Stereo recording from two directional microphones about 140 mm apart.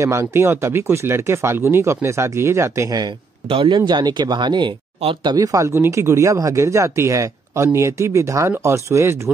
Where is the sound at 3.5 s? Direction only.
35° right (ahead or behind); by 9.2 s 20° right (ahead or behind).